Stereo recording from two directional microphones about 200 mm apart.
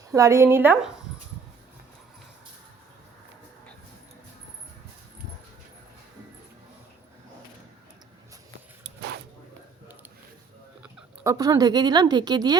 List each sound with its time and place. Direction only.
0.1 s speech: 15° right (ahead or behind)
11.2 s a woman's voice: 15° right (ahead or behind)